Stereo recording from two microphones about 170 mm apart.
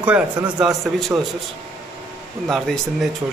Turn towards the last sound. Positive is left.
turn(degrees=0)  # may be behind; listen again after turning